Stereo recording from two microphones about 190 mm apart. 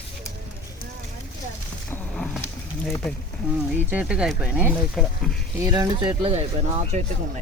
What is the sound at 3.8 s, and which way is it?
Speech, 5° right (ahead or behind).